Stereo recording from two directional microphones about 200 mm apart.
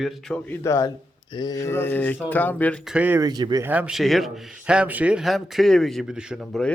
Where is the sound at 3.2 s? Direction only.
20° right (ahead or behind).